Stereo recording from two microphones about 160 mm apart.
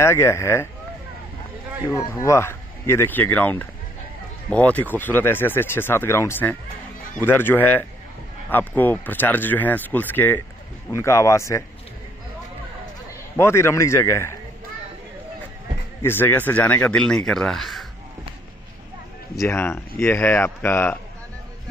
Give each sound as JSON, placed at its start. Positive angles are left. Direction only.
{"t": 0.0, "sound": "speech", "side_deg": 15}
{"t": 1.9, "sound": "speech", "side_deg": 20}
{"t": 13.4, "sound": "speech", "side_deg": 15}
{"t": 16.0, "sound": "speech", "side_deg": 15}
{"t": 19.4, "sound": "speech", "side_deg": 15}